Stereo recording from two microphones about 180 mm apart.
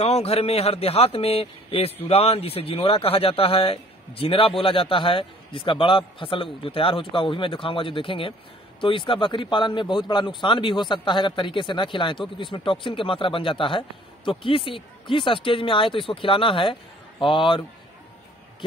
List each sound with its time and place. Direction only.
0.0 s a man's voice: 35° left (ahead or behind)